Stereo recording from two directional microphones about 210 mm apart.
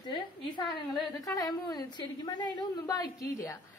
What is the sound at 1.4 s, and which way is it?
A woman's voice, 20° left (ahead or behind).